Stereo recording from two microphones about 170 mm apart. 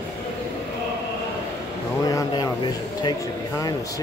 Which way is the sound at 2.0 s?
20° left (ahead or behind).